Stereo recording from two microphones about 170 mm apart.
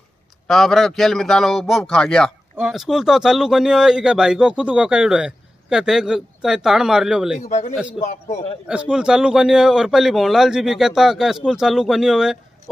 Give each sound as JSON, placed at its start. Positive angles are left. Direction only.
{"t": 0.5, "sound": "speech", "side_deg": 0}
{"t": 7.4, "sound": "a man's voice", "side_deg": 45}
{"t": 8.6, "sound": "speech", "side_deg": -5}